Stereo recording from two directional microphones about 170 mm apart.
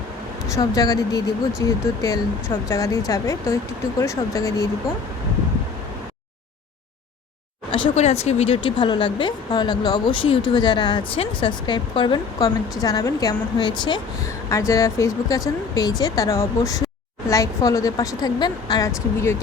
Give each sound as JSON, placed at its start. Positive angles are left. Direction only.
{"t": 0.5, "sound": "speech", "side_deg": 20}
{"t": 4.0, "sound": "speech", "side_deg": 20}
{"t": 7.7, "sound": "speech", "side_deg": 40}